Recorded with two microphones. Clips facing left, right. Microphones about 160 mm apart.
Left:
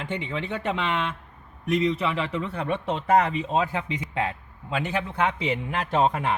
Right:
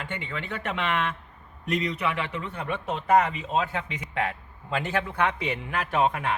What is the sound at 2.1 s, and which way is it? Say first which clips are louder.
A man's voice: left 4 dB; 35° left (ahead or behind).